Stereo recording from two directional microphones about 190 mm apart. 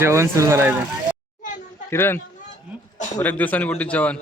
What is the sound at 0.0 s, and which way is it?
Speech, 15° right (ahead or behind).